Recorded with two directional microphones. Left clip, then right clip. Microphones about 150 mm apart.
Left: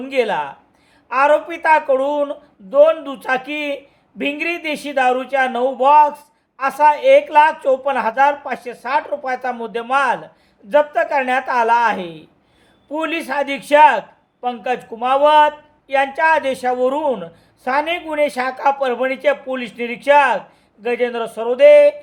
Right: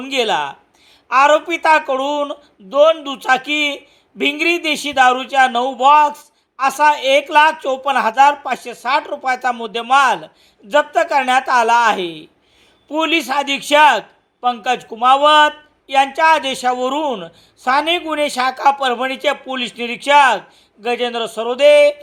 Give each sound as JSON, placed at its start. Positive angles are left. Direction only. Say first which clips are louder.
{"t": 0.0, "sound": "speech", "louder": "right 1 dB", "side_deg": -20}